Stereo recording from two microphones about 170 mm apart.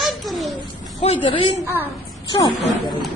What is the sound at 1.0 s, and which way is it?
Speech, 35° left (ahead or behind).